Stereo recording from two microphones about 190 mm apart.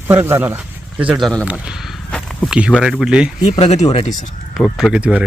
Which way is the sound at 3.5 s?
35° left (ahead or behind).